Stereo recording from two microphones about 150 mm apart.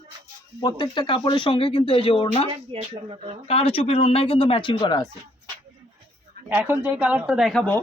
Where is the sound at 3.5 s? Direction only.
40° left (ahead or behind).